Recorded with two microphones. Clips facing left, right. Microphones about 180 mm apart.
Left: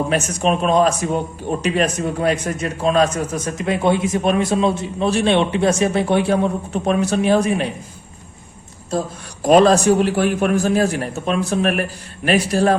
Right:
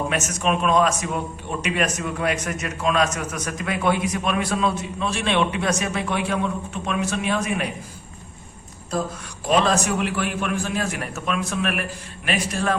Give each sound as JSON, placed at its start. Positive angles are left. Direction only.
{"t": 0.1, "sound": "a man's voice", "side_deg": 30}
{"t": 9.4, "sound": "a man's voice", "side_deg": 40}